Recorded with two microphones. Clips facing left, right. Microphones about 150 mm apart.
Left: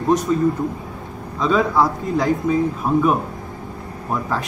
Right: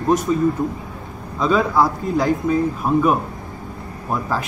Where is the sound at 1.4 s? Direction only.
Centre (ahead or behind).